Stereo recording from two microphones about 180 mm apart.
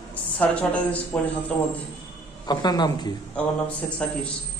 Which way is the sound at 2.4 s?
25° left (ahead or behind).